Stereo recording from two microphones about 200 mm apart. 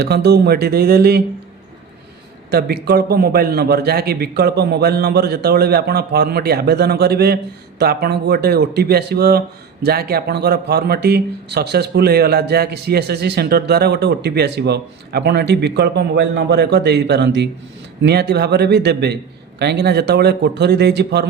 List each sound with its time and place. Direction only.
0.0 s a man's voice: 55° right (ahead or behind)
2.5 s a man's voice: 50° right (ahead or behind)